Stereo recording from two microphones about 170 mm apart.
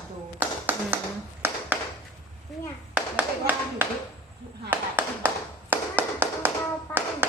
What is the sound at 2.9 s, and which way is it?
Clapping, 10° right (ahead or behind).